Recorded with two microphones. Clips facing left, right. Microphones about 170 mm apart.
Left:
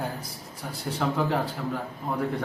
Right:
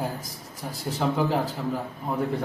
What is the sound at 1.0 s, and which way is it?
Speech, 20° right (ahead or behind).